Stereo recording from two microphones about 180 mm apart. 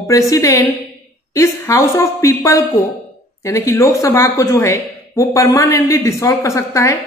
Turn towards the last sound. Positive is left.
turn(degrees=15)  # may be behind; listen again after turning